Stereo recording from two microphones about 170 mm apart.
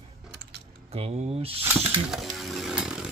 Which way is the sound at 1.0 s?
35° right (ahead or behind).